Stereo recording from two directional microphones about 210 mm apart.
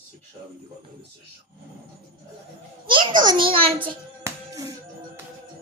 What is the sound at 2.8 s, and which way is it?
Speech, 20° right (ahead or behind).